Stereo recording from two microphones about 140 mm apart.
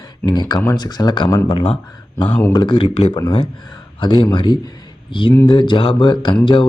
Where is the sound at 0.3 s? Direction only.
30° left (ahead or behind).